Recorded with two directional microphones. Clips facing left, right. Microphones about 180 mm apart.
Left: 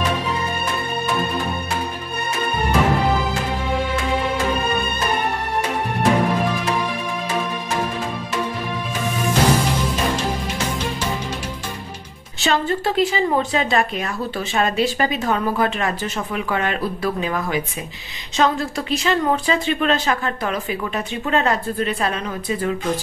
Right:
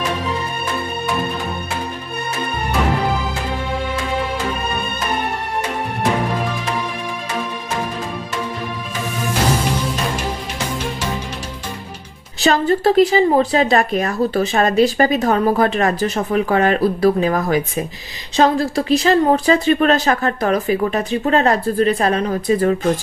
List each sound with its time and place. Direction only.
12.4 s a woman's voice: 40° right (ahead or behind)